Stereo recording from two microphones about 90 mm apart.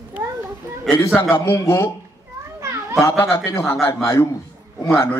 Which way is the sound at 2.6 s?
35° right (ahead or behind).